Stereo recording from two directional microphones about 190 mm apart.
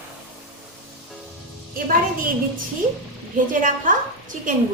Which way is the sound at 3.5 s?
45° right (ahead or behind).